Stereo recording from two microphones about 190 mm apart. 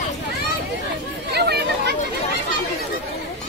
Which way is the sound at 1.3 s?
60° right (ahead or behind).